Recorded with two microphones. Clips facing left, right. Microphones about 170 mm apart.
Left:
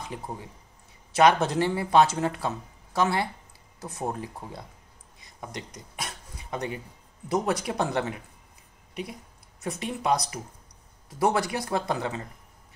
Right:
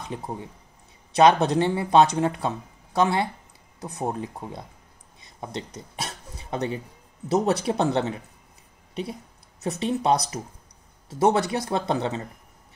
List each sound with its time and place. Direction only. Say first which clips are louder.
0.1 s speech: right 4 dB; 25° right (ahead or behind)
5.2 s a sound: right 5 dB; 25° right (ahead or behind)
5.8 s throat clearing: right 3 dB; 25° right (ahead or behind)
7.2 s speech: right 4 dB; 25° right (ahead or behind)
9.6 s speech: right 6 dB; 25° right (ahead or behind)